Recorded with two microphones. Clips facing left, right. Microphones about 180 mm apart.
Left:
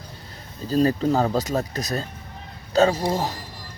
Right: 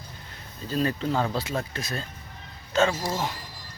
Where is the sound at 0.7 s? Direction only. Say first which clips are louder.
Left 6 dB; 40° left (ahead or behind).